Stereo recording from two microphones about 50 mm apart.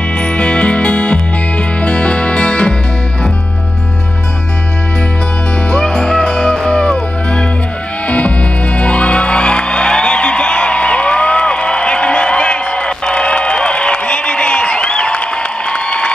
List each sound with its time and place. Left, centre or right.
0.2 s music: left
5.7 s music: centre